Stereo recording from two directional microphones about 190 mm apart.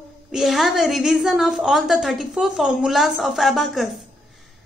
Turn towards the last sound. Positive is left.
turn(degrees=0)  # may be behind; listen again after turning